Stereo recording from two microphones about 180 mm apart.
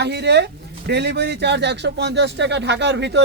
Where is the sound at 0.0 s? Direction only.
70° right (ahead or behind).